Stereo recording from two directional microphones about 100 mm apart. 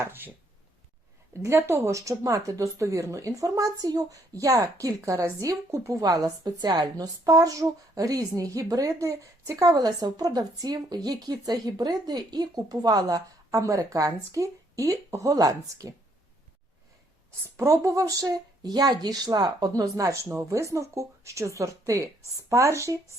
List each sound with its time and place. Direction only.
0.0 s a sound: 20° right (ahead or behind)
1.4 s speech: 25° right (ahead or behind)
17.4 s speech: 30° right (ahead or behind)